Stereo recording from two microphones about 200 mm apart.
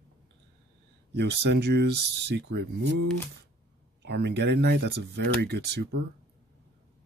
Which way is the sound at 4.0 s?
55° right (ahead or behind).